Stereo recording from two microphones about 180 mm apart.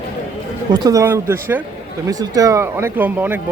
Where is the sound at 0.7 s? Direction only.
20° right (ahead or behind).